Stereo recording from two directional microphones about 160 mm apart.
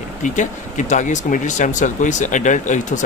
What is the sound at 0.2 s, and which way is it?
Speech, 50° left (ahead or behind).